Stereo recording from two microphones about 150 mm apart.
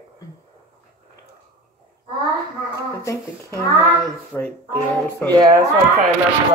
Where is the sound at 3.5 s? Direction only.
20° right (ahead or behind).